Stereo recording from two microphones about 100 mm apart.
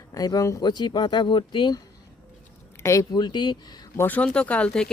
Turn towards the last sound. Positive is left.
turn(degrees=15)  # may be behind; listen again after turning